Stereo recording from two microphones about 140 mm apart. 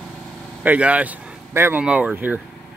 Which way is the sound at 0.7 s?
10° right (ahead or behind).